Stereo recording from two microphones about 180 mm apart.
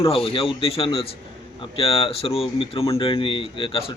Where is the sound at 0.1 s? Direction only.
30° left (ahead or behind).